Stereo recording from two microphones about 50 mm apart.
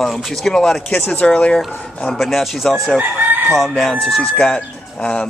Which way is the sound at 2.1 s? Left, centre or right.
Centre.